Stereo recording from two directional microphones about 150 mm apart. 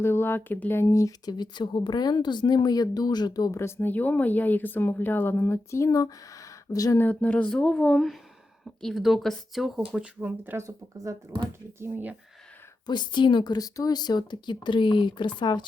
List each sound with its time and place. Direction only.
0.0 s speech: 15° left (ahead or behind)
7.0 s speech: 10° left (ahead or behind); by 12.1 s 15° right (ahead or behind)
12.8 s speech: 30° left (ahead or behind)